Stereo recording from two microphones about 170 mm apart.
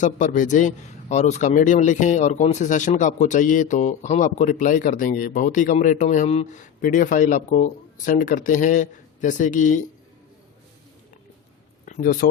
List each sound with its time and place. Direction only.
0.0 s a man's voice: 45° left (ahead or behind)
11.9 s speech: 50° left (ahead or behind)